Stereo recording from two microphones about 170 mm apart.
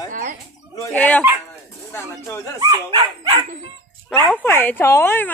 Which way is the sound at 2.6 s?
20° right (ahead or behind).